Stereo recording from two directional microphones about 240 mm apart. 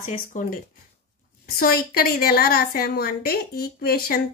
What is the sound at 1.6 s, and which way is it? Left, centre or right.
A woman's voice, left.